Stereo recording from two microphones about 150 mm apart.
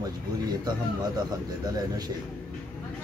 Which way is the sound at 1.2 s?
25° right (ahead or behind).